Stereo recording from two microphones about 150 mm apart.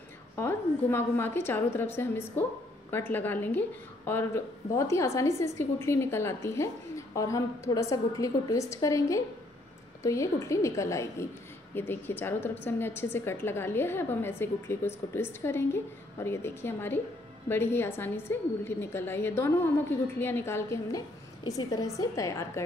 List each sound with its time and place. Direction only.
0.4 s a woman's voice: 15° left (ahead or behind)